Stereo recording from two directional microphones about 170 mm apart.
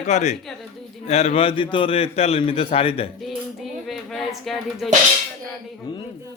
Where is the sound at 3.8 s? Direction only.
Centre (ahead or behind).